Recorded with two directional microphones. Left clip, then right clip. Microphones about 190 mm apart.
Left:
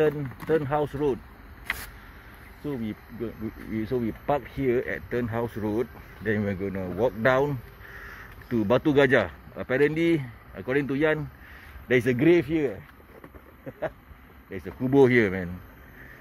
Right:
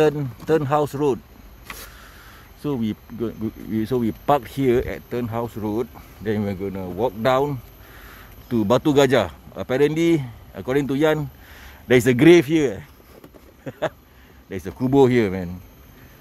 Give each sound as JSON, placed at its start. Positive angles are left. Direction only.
{"t": 0.0, "sound": "speech", "side_deg": -30}
{"t": 2.6, "sound": "speech", "side_deg": -45}
{"t": 4.8, "sound": "speech", "side_deg": -15}
{"t": 8.5, "sound": "speech", "side_deg": -25}
{"t": 14.9, "sound": "speech", "side_deg": -15}